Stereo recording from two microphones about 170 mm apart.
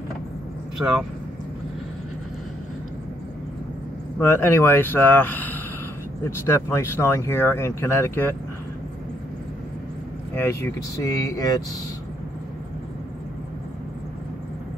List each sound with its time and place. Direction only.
0.8 s speech: 15° right (ahead or behind)
4.2 s speech: 15° left (ahead or behind)
10.3 s speech: 15° left (ahead or behind)